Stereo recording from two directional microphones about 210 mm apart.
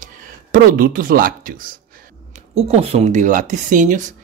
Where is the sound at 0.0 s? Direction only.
40° right (ahead or behind).